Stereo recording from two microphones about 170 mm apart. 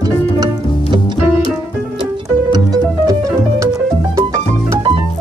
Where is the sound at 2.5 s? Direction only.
20° right (ahead or behind).